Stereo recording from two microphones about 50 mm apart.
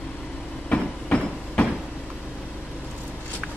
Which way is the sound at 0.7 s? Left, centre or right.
Left.